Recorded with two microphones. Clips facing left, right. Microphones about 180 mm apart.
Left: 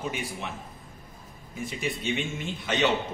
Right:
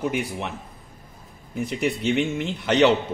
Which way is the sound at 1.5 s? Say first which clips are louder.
Right 7 dB; 65° right (ahead or behind).